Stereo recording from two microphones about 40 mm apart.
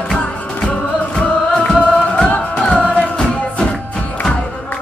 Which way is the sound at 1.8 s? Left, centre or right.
Left.